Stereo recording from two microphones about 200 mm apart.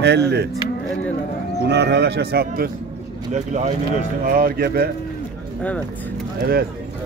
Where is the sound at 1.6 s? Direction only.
55° right (ahead or behind).